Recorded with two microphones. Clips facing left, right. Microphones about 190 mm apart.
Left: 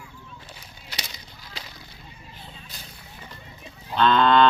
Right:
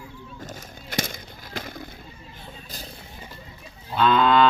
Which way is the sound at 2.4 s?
40° right (ahead or behind).